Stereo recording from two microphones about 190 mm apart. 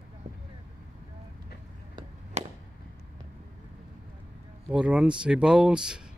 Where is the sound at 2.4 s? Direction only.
35° right (ahead or behind).